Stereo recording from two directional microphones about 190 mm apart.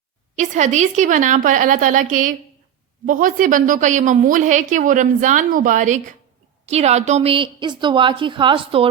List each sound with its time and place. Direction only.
0.3 s a woman's voice: 40° right (ahead or behind)